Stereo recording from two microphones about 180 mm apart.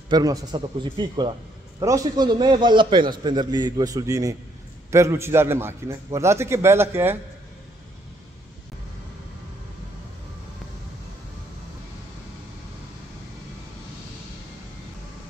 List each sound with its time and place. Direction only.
0.1 s a man's voice: 20° right (ahead or behind)